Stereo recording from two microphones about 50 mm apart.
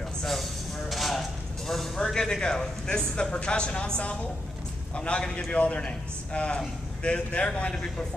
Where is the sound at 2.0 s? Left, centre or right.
Centre.